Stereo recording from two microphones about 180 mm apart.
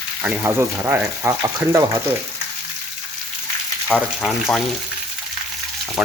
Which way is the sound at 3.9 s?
5° left (ahead or behind).